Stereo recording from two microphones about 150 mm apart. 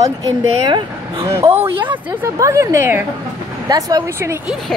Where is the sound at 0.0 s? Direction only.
25° right (ahead or behind).